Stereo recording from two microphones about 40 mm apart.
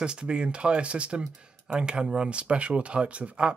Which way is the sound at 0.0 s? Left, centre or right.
Right.